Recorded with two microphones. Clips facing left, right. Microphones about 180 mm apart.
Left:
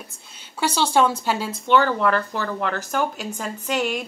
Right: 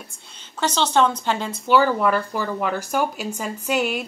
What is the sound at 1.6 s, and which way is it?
Speech, 5° right (ahead or behind).